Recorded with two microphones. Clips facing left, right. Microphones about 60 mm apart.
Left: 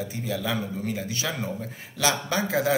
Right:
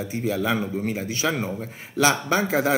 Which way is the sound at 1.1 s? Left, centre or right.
Right.